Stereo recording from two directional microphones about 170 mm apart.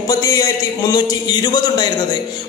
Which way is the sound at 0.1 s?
20° left (ahead or behind).